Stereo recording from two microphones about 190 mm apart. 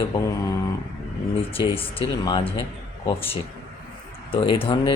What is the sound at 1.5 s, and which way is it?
Speech, 30° left (ahead or behind).